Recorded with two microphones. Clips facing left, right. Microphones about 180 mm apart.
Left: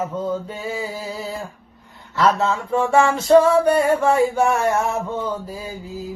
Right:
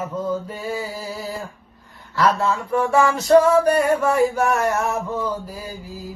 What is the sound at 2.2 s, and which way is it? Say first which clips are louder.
Music: left 1 dB; 25° left (ahead or behind).